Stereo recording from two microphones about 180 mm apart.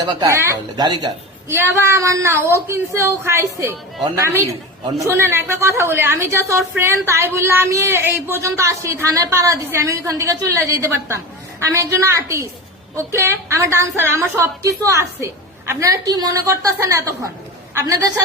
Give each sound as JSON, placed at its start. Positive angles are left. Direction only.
{"t": 0.0, "sound": "a woman's voice", "side_deg": -25}